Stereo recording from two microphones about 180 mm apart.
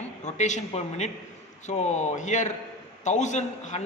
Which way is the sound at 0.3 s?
40° left (ahead or behind).